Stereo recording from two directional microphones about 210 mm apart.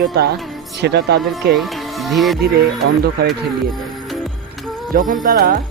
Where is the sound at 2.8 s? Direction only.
55° right (ahead or behind).